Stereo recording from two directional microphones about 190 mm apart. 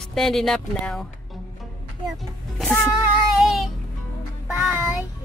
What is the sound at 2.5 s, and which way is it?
Speech, 5° left (ahead or behind).